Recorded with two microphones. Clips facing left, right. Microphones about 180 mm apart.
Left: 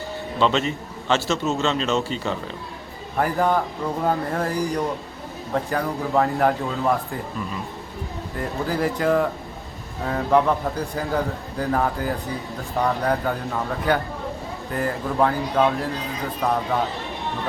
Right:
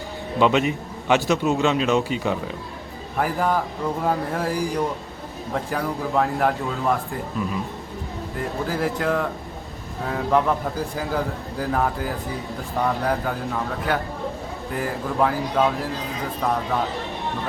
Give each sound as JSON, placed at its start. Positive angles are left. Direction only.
{"t": 0.3, "sound": "a man's voice", "side_deg": -10}